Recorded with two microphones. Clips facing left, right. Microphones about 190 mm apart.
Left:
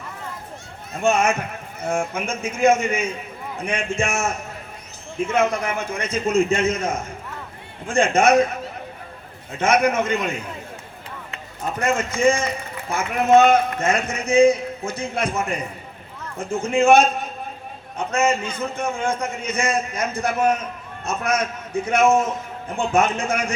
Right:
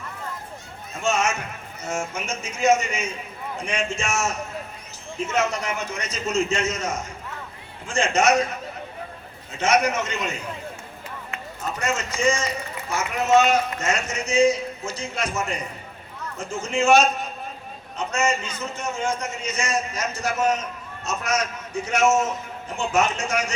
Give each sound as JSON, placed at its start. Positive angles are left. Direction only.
{"t": 0.9, "sound": "a man's voice", "side_deg": 60}
{"t": 9.6, "sound": "a man's voice", "side_deg": 55}
{"t": 11.8, "sound": "a man's voice", "side_deg": 55}